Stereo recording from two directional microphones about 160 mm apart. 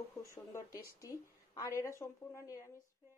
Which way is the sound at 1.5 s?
20° left (ahead or behind).